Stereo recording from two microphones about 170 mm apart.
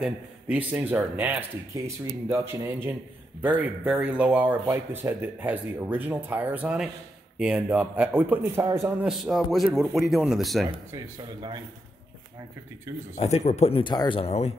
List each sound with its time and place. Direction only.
0.0 s speech: 10° right (ahead or behind)
10.9 s speech: 25° right (ahead or behind)
13.1 s speech: 40° left (ahead or behind)